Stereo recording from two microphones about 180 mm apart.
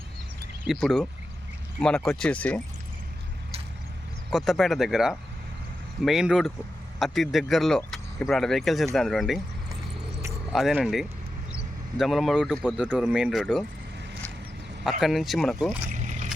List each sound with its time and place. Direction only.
0.6 s a man's voice: centre (ahead or behind)
4.3 s a man's voice: centre (ahead or behind)
10.5 s a man's voice: centre (ahead or behind)
14.8 s a man's voice: centre (ahead or behind)
16.0 s boat: 40° right (ahead or behind)